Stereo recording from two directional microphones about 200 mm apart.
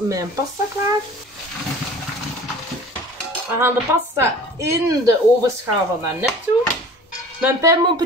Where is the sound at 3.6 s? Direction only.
10° right (ahead or behind).